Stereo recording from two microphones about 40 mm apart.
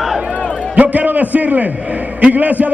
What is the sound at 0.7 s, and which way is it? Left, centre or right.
A man's voice, right.